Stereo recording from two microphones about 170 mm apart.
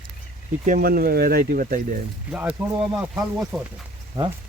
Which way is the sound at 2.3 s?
10° right (ahead or behind).